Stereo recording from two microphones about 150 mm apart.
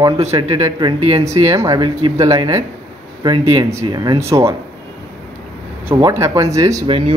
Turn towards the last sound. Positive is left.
turn(degrees=-40)  # may be behind; listen again after turning